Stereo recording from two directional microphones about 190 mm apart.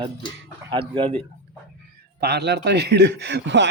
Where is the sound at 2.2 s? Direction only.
60° right (ahead or behind).